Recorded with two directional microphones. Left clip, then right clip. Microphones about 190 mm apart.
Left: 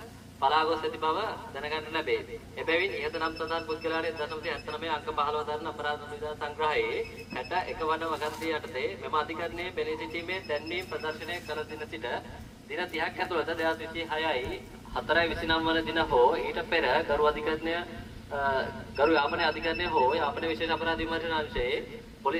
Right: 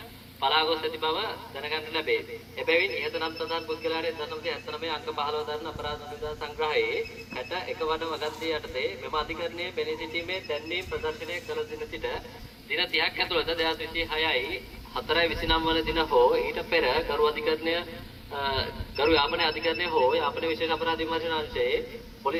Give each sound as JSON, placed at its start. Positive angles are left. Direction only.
{"t": 0.4, "sound": "a man's voice", "side_deg": 20}
{"t": 13.3, "sound": "a man's voice", "side_deg": 25}
{"t": 18.9, "sound": "a man's voice", "side_deg": 25}